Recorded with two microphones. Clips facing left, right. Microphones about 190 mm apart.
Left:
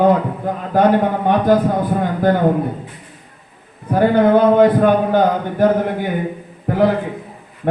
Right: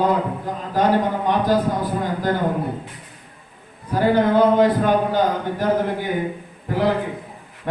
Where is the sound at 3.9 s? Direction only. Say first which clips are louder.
Left 4 dB; 55° left (ahead or behind).